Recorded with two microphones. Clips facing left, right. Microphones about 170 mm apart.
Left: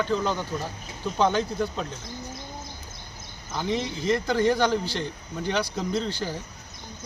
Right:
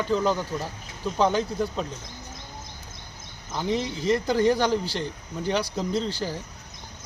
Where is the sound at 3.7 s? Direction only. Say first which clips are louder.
Right 1 dB; 35° right (ahead or behind).